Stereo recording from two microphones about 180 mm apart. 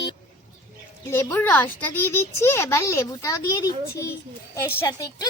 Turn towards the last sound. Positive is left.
turn(degrees=15)  # may be behind; listen again after turning